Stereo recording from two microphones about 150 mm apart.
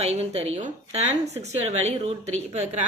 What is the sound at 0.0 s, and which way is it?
A woman's voice, 45° right (ahead or behind).